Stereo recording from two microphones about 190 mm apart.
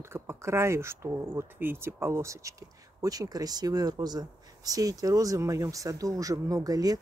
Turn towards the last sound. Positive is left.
turn(degrees=-20)  # may be behind; listen again after turning